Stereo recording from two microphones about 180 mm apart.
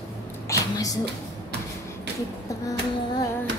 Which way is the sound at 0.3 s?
15° left (ahead or behind).